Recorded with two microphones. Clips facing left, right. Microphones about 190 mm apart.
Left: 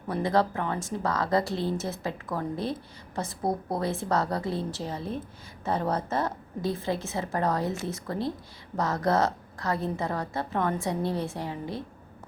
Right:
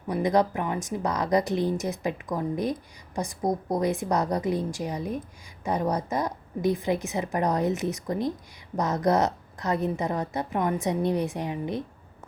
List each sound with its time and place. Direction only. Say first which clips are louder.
0.1 s a woman's voice: right 2 dB; 15° right (ahead or behind)